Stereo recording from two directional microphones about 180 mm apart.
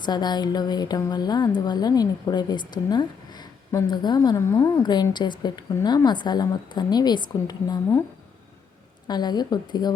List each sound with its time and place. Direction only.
0.0 s a woman's voice: 25° left (ahead or behind)
9.0 s a woman's voice: 25° left (ahead or behind)